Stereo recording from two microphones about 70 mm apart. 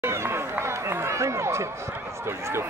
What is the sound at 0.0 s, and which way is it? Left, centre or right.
Run, right.